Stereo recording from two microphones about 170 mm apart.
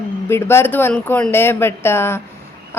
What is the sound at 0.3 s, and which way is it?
A woman's voice, 15° left (ahead or behind).